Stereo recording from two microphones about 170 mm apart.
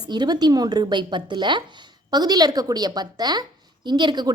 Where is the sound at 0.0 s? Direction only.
25° right (ahead or behind).